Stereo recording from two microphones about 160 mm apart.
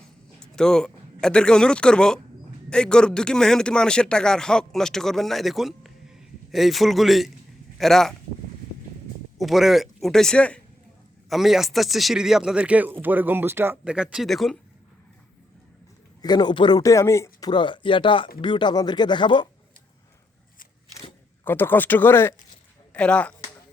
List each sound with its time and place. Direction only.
0.5 s speech: 5° left (ahead or behind)
9.4 s speech: centre (ahead or behind)
16.2 s speech: 25° left (ahead or behind)
17.5 s speech: 30° left (ahead or behind)
21.4 s speech: 15° left (ahead or behind)